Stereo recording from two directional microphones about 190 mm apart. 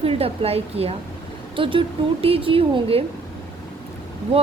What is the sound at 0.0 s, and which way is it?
A woman's voice, 30° right (ahead or behind).